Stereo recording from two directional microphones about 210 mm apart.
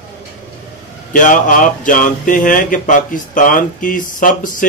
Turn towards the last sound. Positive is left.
turn(degrees=40)  # may be behind; listen again after turning